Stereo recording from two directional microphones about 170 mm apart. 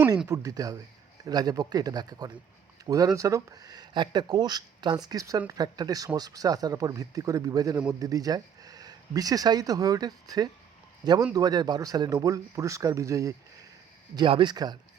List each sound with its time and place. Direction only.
0.3 s speech: 20° right (ahead or behind)